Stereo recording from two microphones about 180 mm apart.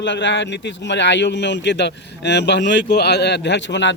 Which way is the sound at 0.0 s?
80° left.